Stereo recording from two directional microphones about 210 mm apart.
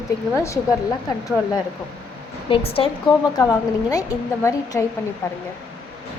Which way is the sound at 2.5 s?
25° left (ahead or behind).